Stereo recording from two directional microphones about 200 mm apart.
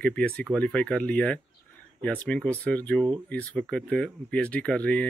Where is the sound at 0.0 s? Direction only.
5° left (ahead or behind).